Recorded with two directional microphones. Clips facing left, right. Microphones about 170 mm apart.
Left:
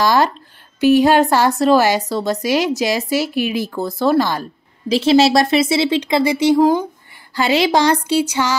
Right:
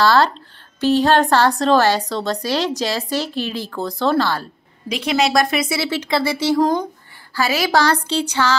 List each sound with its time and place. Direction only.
0.0 s speech: 15° left (ahead or behind)
4.8 s speech: 30° left (ahead or behind)
6.6 s speech: 5° left (ahead or behind)
7.3 s speech: 25° left (ahead or behind)